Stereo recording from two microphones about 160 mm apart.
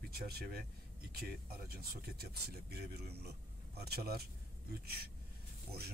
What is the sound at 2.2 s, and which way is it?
Speech, 80° right.